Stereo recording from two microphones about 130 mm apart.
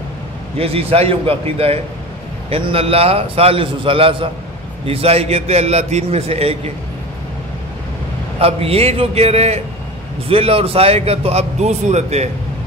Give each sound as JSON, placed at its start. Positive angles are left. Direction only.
{"t": 0.6, "sound": "a man's voice", "side_deg": -45}
{"t": 8.4, "sound": "a man's voice", "side_deg": -50}